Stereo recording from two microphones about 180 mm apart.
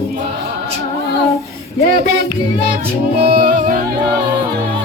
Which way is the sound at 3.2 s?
55° right (ahead or behind).